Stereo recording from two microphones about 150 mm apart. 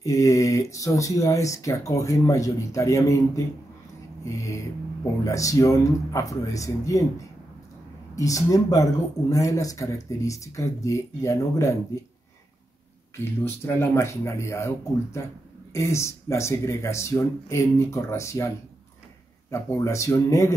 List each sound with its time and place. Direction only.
0.0 s speech: 20° left (ahead or behind)
4.2 s a sound: 20° left (ahead or behind)
5.2 s speech: 20° left (ahead or behind)
8.2 s speech: 20° left (ahead or behind)
13.2 s speech: 15° left (ahead or behind)
15.7 s speech: 20° left (ahead or behind)
19.5 s speech: 20° left (ahead or behind)